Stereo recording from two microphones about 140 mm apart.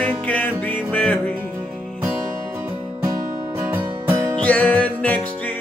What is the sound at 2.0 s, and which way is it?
Music, 15° right (ahead or behind).